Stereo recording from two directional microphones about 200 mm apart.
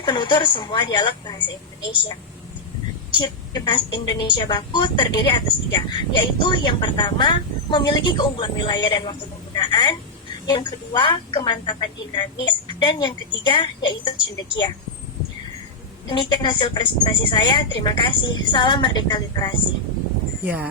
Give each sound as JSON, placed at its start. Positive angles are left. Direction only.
{"t": 0.0, "sound": "a woman's voice", "side_deg": 25}
{"t": 3.2, "sound": "a woman's voice", "side_deg": 20}
{"t": 9.6, "sound": "a sound", "side_deg": 25}
{"t": 10.4, "sound": "a woman's voice", "side_deg": 20}
{"t": 16.0, "sound": "a woman's voice", "side_deg": 25}
{"t": 20.4, "sound": "speech", "side_deg": -10}